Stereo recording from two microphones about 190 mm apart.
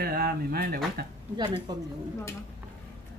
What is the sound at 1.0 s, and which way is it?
Speech, 55° right (ahead or behind).